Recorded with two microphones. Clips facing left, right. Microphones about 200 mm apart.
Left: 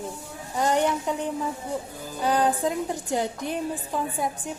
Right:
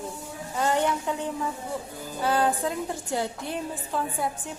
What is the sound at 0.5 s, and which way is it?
A woman's voice, 15° left (ahead or behind).